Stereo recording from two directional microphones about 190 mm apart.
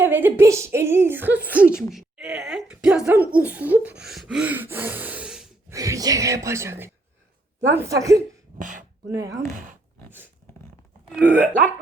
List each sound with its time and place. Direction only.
0.0 s speech: 10° right (ahead or behind)
4.0 s gasp: centre (ahead or behind)
5.7 s speech: 20° right (ahead or behind)
8.5 s speech: 45° right (ahead or behind)
9.0 s speech: 15° right (ahead or behind)
11.1 s speech: 5° right (ahead or behind)